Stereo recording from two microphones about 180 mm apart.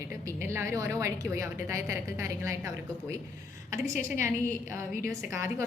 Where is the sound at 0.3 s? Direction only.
15° right (ahead or behind).